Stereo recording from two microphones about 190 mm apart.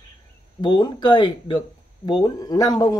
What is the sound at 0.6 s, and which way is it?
Speech, 25° left (ahead or behind).